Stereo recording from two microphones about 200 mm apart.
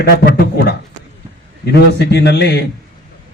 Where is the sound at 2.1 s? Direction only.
55° left (ahead or behind).